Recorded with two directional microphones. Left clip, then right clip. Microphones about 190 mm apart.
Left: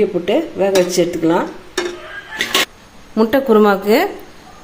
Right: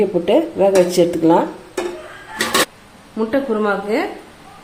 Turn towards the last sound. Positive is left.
turn(degrees=45)  # may be behind; listen again after turning